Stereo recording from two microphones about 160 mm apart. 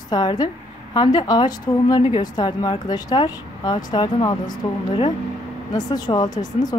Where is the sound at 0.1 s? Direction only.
25° left (ahead or behind).